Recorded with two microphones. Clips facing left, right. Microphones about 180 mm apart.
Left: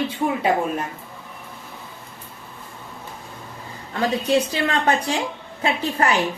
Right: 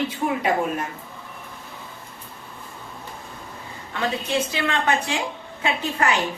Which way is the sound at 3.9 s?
35° left (ahead or behind).